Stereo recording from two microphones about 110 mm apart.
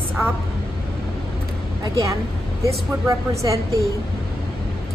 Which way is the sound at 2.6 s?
30° right (ahead or behind).